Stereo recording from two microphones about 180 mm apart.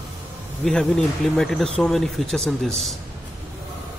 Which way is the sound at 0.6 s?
Centre (ahead or behind).